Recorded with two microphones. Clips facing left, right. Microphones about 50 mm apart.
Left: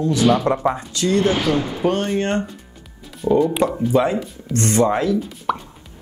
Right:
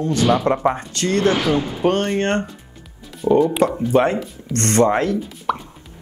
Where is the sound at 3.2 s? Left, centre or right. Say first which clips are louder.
Right 1 dB; centre.